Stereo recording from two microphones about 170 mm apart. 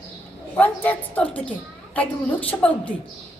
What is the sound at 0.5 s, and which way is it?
Speech, 10° left (ahead or behind).